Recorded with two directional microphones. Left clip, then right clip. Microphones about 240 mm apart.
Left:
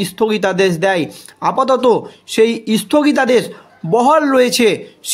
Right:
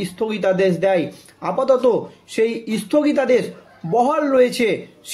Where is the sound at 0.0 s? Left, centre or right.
Left.